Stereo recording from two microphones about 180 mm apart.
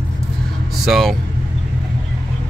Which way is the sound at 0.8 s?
Centre (ahead or behind).